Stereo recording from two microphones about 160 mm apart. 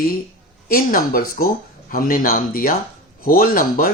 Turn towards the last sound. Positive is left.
turn(degrees=65)  # may be behind; listen again after turning